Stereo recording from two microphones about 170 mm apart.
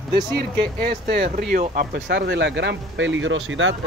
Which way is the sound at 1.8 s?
90° right.